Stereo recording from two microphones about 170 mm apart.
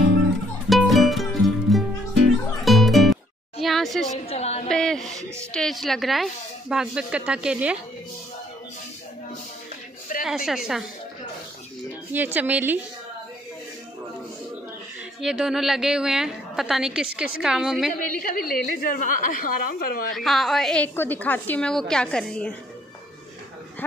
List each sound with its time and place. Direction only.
0.7 s music: centre (ahead or behind)
3.6 s a sound: centre (ahead or behind)
4.3 s a sound: 40° left (ahead or behind)
4.6 s a woman's voice: 5° left (ahead or behind)
10.2 s a woman's voice: 5° right (ahead or behind)
12.1 s a woman's voice: 10° right (ahead or behind)
15.1 s a woman's voice: 5° right (ahead or behind)
17.9 s a woman's voice: 55° left (ahead or behind)
20.2 s a woman's voice: centre (ahead or behind)